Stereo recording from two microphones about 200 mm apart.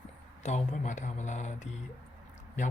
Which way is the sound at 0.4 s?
35° left (ahead or behind).